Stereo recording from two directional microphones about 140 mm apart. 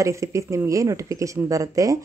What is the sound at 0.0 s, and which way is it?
Speech, 20° right (ahead or behind).